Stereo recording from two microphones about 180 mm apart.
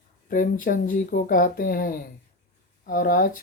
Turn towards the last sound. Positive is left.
turn(degrees=55)  # may be behind; listen again after turning